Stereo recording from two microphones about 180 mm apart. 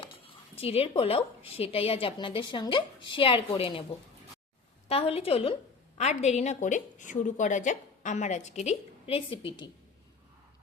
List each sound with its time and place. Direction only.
0.0 s speech: 30° left (ahead or behind)
4.9 s speech: 35° left (ahead or behind)